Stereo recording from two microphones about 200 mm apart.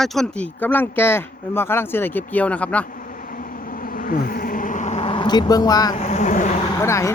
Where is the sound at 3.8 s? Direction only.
45° left (ahead or behind); by 6.0 s 20° left (ahead or behind).